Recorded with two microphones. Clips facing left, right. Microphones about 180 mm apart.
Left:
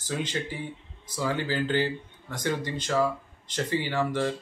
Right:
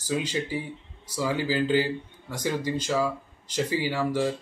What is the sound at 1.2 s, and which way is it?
Speech, 10° right (ahead or behind).